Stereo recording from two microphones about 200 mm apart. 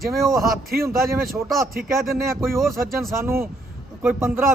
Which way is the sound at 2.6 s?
Centre (ahead or behind).